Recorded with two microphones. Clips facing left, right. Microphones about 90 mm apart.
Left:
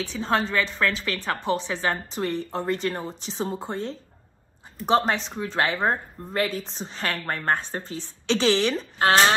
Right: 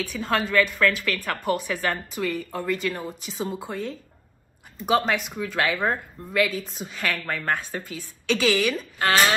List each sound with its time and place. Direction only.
0.0 s a woman's voice: 25° left (ahead or behind)